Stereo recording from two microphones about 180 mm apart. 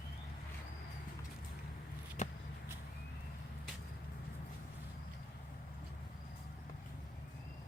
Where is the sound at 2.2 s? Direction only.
40° left (ahead or behind).